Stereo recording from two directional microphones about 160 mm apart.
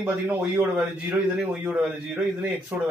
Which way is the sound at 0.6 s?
10° right (ahead or behind).